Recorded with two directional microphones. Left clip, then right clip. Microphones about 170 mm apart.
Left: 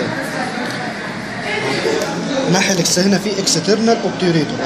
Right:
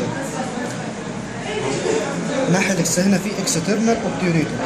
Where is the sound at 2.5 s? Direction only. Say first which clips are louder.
Left 6 dB; 35° left (ahead or behind).